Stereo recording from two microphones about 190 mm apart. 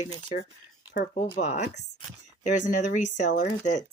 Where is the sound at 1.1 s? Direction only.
35° left (ahead or behind).